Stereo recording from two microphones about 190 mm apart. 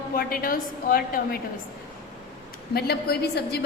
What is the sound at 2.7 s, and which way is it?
Speech, 55° left (ahead or behind).